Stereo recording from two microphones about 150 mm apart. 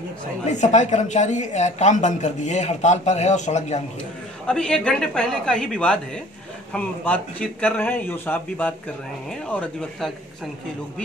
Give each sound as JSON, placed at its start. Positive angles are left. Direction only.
{"t": 0.5, "sound": "a woman's voice", "side_deg": 50}
{"t": 4.5, "sound": "speech", "side_deg": 5}